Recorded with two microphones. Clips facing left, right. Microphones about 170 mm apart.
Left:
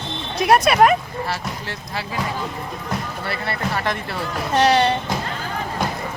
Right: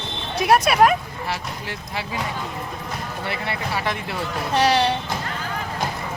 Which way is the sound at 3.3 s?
10° right (ahead or behind).